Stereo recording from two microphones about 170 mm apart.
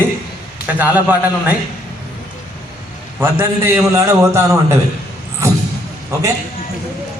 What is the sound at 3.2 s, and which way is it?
A man's voice, 15° right (ahead or behind).